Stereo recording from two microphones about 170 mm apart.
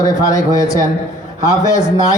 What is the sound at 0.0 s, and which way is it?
Speech, 20° left (ahead or behind).